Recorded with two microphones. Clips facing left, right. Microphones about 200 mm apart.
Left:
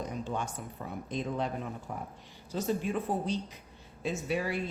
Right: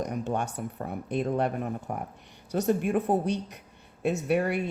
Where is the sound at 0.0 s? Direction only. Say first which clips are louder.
Right 5 dB; 65° right (ahead or behind).